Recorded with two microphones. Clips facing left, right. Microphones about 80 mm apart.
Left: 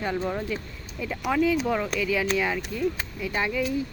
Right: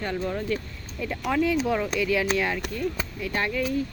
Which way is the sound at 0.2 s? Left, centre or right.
Centre.